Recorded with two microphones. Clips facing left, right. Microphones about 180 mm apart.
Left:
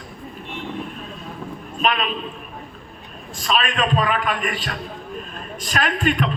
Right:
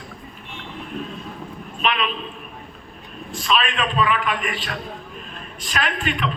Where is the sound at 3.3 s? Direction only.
40° left (ahead or behind).